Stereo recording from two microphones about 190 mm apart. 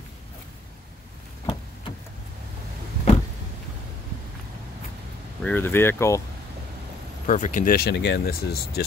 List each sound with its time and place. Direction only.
1.4 s a sound: 25° left (ahead or behind)
5.4 s speech: 10° left (ahead or behind)
7.2 s speech: 40° left (ahead or behind)